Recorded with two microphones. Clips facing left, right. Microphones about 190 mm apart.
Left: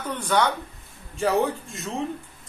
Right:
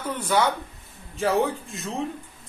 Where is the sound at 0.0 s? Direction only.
10° right (ahead or behind).